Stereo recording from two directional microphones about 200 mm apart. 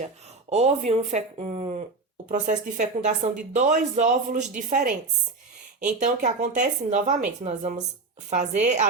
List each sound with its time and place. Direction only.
0.5 s speech: 35° right (ahead or behind)